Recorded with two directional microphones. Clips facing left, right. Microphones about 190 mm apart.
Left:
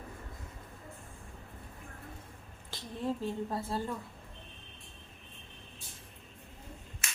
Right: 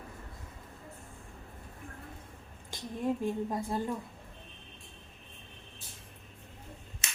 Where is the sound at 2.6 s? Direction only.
15° right (ahead or behind).